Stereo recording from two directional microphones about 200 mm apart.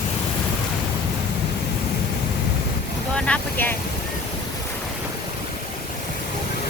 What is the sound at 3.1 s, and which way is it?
Boat, 10° left (ahead or behind).